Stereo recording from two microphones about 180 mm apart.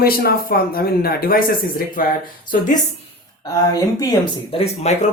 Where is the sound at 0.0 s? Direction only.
55° left (ahead or behind).